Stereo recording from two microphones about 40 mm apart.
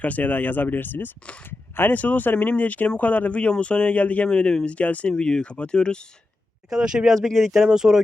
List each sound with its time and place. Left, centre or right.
0.0 s speech: left
1.5 s a sound: left
2.0 s speech: left
4.3 s speech: left
4.7 s speech: left
5.1 s speech: centre
7.0 s speech: centre
7.6 s speech: centre